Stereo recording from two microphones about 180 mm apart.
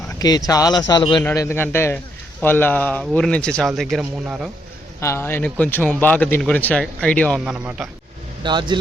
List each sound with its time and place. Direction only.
0.2 s speech: 20° left (ahead or behind)
1.2 s a man's voice: 15° left (ahead or behind)
4.9 s speech: 15° left (ahead or behind)
7.4 s a man's voice: 5° right (ahead or behind)
8.4 s speech: 25° right (ahead or behind)